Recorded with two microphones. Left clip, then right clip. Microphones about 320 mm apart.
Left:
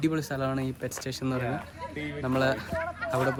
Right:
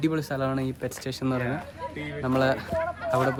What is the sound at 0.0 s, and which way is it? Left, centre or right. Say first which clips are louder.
Speech: right 2 dB; centre.